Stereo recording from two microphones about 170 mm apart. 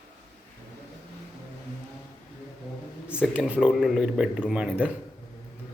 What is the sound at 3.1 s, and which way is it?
Speech, 5° right (ahead or behind).